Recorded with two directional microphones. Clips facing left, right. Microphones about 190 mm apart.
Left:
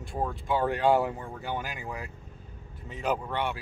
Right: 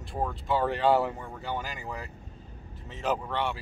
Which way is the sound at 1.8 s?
Centre (ahead or behind).